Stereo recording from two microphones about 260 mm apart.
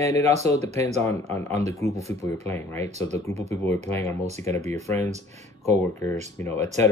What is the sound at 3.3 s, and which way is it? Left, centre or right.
Speech, right.